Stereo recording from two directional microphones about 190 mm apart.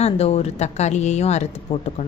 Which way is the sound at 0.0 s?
35° left (ahead or behind).